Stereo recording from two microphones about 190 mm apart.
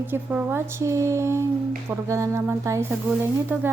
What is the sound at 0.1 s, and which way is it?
Speech, 10° right (ahead or behind).